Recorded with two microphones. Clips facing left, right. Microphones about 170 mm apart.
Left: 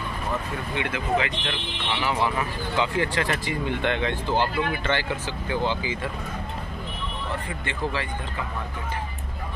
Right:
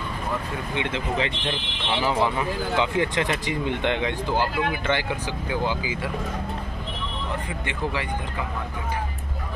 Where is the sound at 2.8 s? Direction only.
20° right (ahead or behind).